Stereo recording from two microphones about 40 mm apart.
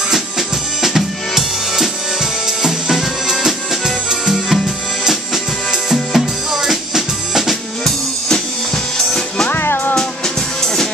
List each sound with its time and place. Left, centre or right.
0.8 s drum: centre
2.6 s music: centre
8.9 s music: centre
9.5 s music: left